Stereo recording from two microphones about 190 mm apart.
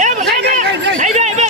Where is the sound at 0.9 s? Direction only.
40° right (ahead or behind).